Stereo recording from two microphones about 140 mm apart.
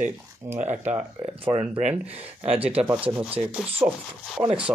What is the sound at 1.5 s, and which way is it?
Speech, 50° right (ahead or behind).